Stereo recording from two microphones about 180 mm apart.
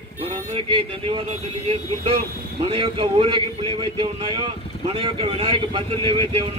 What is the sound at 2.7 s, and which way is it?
Speech, 30° right (ahead or behind).